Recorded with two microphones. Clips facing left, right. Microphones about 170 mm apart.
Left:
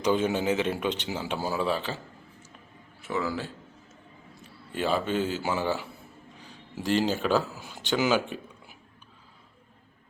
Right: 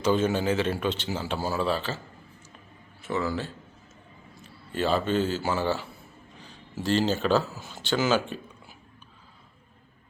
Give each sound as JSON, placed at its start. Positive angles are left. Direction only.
{"t": 0.0, "sound": "a man's voice", "side_deg": 15}
{"t": 3.0, "sound": "a man's voice", "side_deg": 10}
{"t": 4.7, "sound": "a man's voice", "side_deg": 15}